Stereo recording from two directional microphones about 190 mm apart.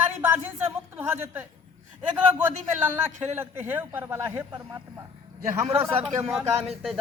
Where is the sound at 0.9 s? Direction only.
10° right (ahead or behind).